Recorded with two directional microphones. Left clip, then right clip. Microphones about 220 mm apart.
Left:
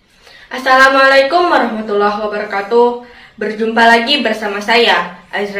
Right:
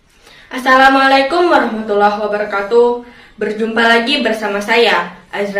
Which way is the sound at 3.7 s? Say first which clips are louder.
Left 3 dB; 20° right (ahead or behind).